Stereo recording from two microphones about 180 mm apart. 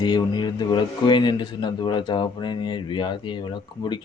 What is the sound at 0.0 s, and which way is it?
A man's voice, 25° left (ahead or behind).